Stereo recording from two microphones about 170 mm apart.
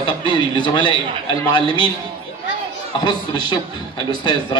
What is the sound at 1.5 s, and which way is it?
Speech, 25° left (ahead or behind).